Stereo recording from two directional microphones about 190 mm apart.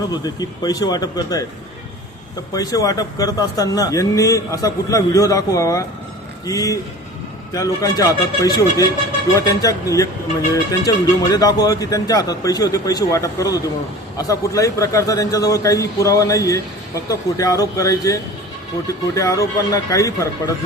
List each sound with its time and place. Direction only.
0.1 s speech: 20° left (ahead or behind)
2.5 s a man's voice: 20° left (ahead or behind)